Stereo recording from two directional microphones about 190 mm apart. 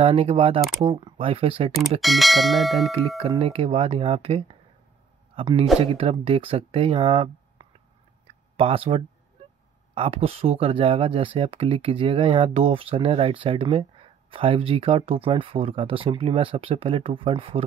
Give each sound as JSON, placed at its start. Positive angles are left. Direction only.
{"t": 0.0, "sound": "speech", "side_deg": -30}
{"t": 2.0, "sound": "speech", "side_deg": 0}
{"t": 3.2, "sound": "speech", "side_deg": -30}
{"t": 8.3, "sound": "a sound", "side_deg": -30}
{"t": 9.9, "sound": "speech", "side_deg": -30}